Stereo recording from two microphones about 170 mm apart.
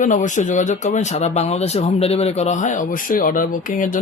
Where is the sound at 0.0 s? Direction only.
45° left (ahead or behind).